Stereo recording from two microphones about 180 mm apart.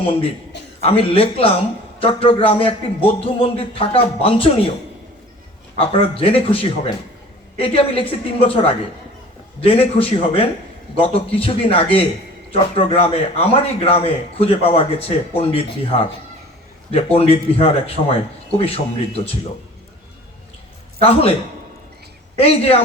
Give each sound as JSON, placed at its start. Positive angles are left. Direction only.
{"t": 0.0, "sound": "speech", "side_deg": 30}
{"t": 5.7, "sound": "speech", "side_deg": 30}
{"t": 21.0, "sound": "speech", "side_deg": 35}
{"t": 22.4, "sound": "speech", "side_deg": 35}